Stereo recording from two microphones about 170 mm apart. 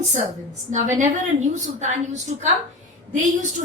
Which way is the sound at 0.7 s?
45° right (ahead or behind).